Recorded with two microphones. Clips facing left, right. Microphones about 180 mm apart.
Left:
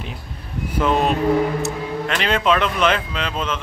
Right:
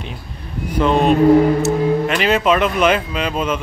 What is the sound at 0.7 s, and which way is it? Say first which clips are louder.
A man's voice: right 5 dB; 5° left (ahead or behind).